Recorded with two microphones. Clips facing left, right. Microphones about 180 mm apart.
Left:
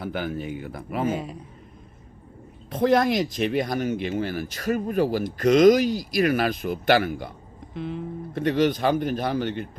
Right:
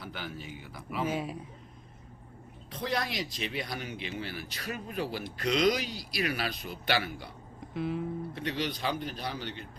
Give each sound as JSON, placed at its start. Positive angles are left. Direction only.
{"t": 0.0, "sound": "speech", "side_deg": 55}
{"t": 2.6, "sound": "speech", "side_deg": 50}
{"t": 7.7, "sound": "music", "side_deg": -5}
{"t": 8.4, "sound": "speech", "side_deg": 50}